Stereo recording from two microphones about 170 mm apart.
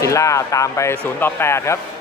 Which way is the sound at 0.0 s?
20° left (ahead or behind).